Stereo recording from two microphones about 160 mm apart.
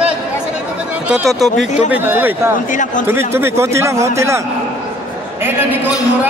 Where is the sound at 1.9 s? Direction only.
10° right (ahead or behind).